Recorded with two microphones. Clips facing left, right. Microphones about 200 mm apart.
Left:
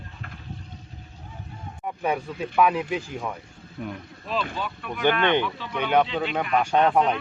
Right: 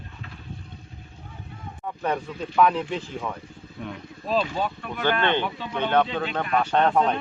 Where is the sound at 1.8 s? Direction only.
10° left (ahead or behind).